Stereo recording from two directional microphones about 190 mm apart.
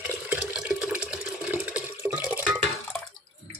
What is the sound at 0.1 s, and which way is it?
Water, 5° right (ahead or behind).